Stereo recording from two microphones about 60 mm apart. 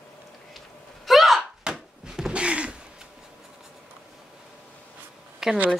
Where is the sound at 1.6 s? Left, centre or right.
Centre.